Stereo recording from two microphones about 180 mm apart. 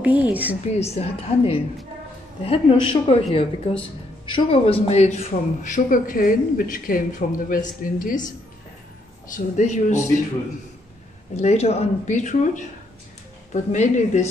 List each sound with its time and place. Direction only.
0.0 s a woman's voice: 10° right (ahead or behind)
0.7 s a woman's voice: 35° left (ahead or behind)
9.3 s a woman's voice: 40° left (ahead or behind)
11.4 s a woman's voice: 35° left (ahead or behind)